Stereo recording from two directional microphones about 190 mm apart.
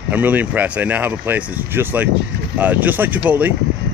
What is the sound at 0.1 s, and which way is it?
Speech, 10° right (ahead or behind).